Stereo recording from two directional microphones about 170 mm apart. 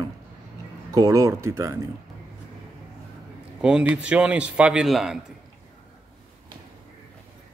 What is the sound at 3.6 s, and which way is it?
A man's voice, 5° right (ahead or behind).